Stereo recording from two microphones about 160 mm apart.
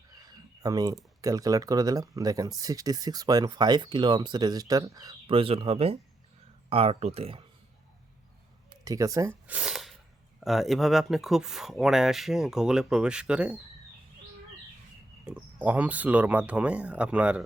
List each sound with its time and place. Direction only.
0.3 s speech: 25° right (ahead or behind)
5.3 s speech: 35° right (ahead or behind)
8.7 s speech: 20° right (ahead or behind)
9.6 s sneeze: centre (ahead or behind)
10.4 s speech: centre (ahead or behind)
15.3 s speech: 10° right (ahead or behind)